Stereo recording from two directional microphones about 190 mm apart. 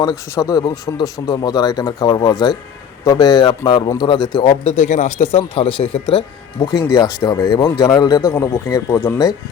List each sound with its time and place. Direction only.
0.3 s speech: 15° left (ahead or behind)
4.8 s speech: 40° left (ahead or behind); by 9.3 s 15° left (ahead or behind)